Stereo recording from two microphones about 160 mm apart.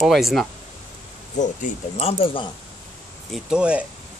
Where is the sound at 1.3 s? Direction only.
50° left (ahead or behind); by 2.5 s 35° left (ahead or behind).